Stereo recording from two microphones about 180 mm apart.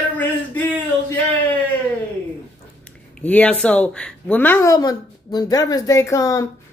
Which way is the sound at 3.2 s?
10° left (ahead or behind).